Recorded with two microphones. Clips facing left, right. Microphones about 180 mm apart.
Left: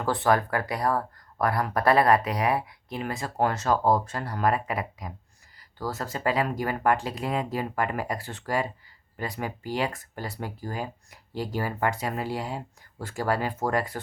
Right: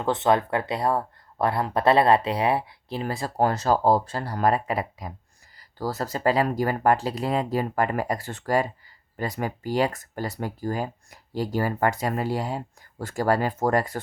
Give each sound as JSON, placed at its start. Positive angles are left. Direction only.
{"t": 0.0, "sound": "speech", "side_deg": -20}